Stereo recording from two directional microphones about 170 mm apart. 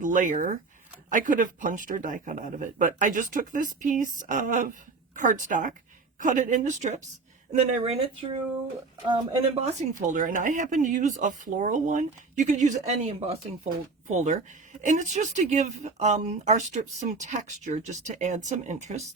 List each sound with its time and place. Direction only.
0.0 s speech: 50° right (ahead or behind)
9.6 s speech: 50° right (ahead or behind)